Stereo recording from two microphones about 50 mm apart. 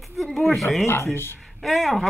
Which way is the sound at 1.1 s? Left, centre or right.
Left.